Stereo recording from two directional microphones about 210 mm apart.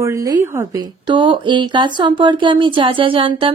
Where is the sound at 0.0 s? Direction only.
15° right (ahead or behind).